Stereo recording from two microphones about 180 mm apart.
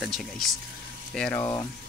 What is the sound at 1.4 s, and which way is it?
Speech, 15° left (ahead or behind).